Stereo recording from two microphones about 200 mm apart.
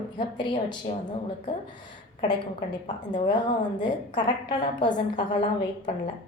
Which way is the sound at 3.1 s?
25° left (ahead or behind).